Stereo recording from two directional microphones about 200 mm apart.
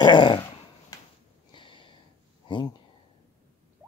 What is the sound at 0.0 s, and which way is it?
Dog, 25° left (ahead or behind).